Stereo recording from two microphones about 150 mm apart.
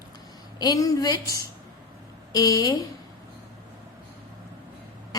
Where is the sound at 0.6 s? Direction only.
25° left (ahead or behind).